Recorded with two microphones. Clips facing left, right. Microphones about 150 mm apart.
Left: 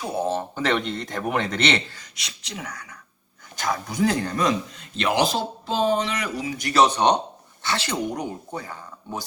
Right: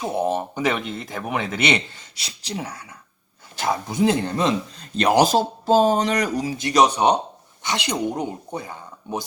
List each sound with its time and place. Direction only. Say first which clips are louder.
0.0 s speech: right 3 dB; 20° right (ahead or behind)
2.1 s speech: right 6 dB; 35° right (ahead or behind)
4.9 s speech: right 5 dB; 40° right (ahead or behind)
6.6 s speech: right 1 dB; 20° right (ahead or behind)